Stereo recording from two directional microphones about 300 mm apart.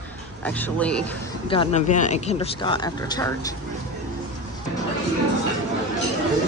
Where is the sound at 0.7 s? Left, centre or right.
Centre.